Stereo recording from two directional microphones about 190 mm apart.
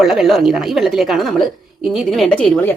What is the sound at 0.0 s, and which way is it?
A woman's voice, centre (ahead or behind).